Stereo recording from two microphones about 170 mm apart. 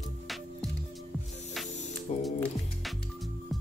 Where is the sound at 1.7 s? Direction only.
45° left (ahead or behind).